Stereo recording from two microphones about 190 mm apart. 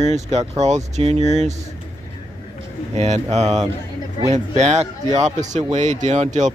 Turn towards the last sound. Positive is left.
turn(degrees=-40)  # may be behind; listen again after turning